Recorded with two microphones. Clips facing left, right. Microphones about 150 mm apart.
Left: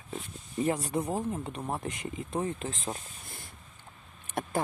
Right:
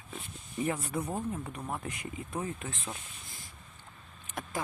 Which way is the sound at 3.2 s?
60° left (ahead or behind).